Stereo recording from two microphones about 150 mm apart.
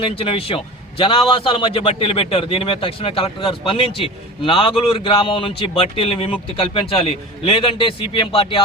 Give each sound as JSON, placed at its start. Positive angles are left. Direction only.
{"t": 0.0, "sound": "a man's voice", "side_deg": 35}